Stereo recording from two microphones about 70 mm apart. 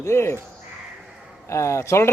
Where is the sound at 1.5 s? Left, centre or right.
Left.